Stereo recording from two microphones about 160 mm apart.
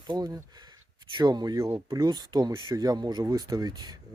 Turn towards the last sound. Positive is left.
turn(degrees=-25)  # may be behind; listen again after turning